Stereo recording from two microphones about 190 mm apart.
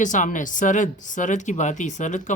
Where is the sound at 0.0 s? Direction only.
40° left (ahead or behind).